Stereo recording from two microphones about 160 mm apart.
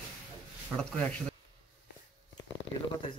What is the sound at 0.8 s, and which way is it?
Speech, 5° left (ahead or behind).